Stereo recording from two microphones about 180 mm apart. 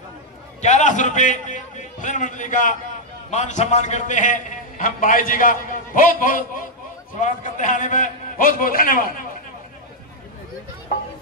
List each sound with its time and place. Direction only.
0.6 s a man's voice: 40° left (ahead or behind)